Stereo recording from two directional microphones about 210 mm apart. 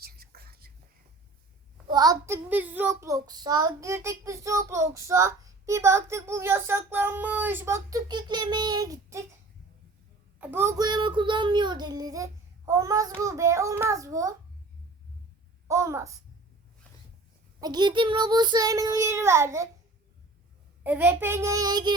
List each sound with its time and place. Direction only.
0.0 s whispering: 45° right (ahead or behind)
1.9 s a child's voice: 20° right (ahead or behind)
10.4 s a child's voice: 10° right (ahead or behind)
15.6 s a child's voice: 15° right (ahead or behind)
17.6 s a child's voice: 20° right (ahead or behind)
20.8 s a child's voice: 10° right (ahead or behind)